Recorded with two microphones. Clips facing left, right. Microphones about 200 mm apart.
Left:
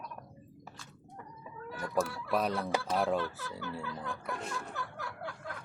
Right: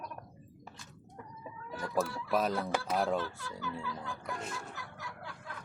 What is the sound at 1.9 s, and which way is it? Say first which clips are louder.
Speech: even; centre (ahead or behind).